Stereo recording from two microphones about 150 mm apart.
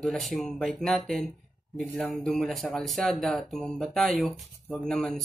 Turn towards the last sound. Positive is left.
turn(degrees=5)  # may be behind; listen again after turning